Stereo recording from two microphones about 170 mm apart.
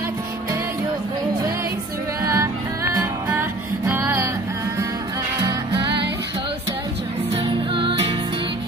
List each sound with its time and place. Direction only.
2.2 s music: 15° right (ahead or behind)
7.3 s music: 30° right (ahead or behind)